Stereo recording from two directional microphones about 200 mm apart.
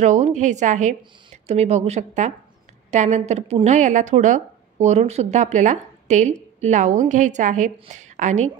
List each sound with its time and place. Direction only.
0.0 s a woman's voice: 35° right (ahead or behind)